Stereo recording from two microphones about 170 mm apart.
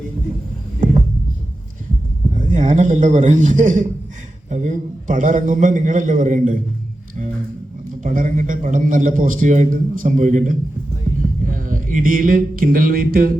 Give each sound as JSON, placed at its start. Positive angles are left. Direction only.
{"t": 2.3, "sound": "a man's voice", "side_deg": -50}
{"t": 8.0, "sound": "a man's voice", "side_deg": -50}
{"t": 11.2, "sound": "a sound", "side_deg": -50}